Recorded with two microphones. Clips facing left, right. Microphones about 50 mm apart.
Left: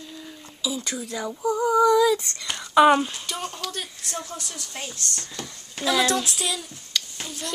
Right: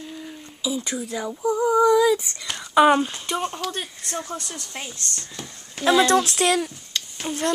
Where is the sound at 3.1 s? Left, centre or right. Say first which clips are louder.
Right 5 dB; right.